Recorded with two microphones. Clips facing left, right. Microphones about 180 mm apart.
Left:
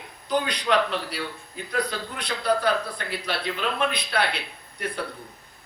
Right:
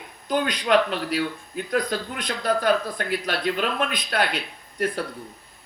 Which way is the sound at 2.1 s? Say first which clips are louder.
Left 2 dB; 50° right (ahead or behind).